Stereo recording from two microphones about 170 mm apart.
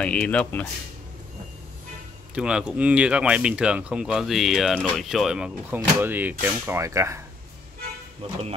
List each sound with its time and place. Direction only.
0.0 s speech: 5° left (ahead or behind)
2.3 s speech: 5° right (ahead or behind)